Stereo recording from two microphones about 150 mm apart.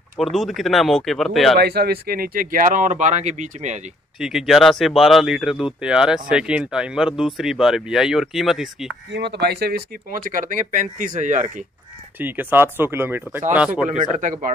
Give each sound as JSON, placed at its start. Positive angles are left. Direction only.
{"t": 0.2, "sound": "speech", "side_deg": 0}
{"t": 1.6, "sound": "speech", "side_deg": -90}
{"t": 4.2, "sound": "speech", "side_deg": -5}
{"t": 9.4, "sound": "speech", "side_deg": -90}
{"t": 12.2, "sound": "speech", "side_deg": -10}
{"t": 13.8, "sound": "speech", "side_deg": -55}